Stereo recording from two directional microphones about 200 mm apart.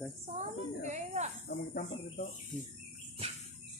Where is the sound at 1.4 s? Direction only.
45° left (ahead or behind).